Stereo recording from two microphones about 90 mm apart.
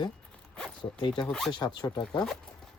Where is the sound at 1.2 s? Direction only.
10° left (ahead or behind).